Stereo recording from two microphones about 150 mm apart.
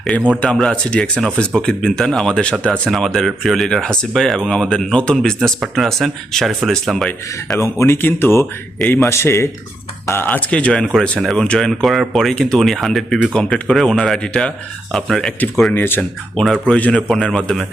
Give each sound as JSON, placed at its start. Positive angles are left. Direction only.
{"t": 0.1, "sound": "a man's voice", "side_deg": 10}
{"t": 7.6, "sound": "a man's voice", "side_deg": 15}
{"t": 15.7, "sound": "a man's voice", "side_deg": 15}